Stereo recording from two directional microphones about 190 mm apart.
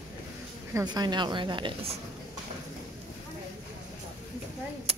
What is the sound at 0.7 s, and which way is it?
Speech, 20° right (ahead or behind).